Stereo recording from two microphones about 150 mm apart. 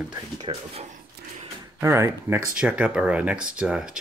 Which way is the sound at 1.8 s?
20° right (ahead or behind).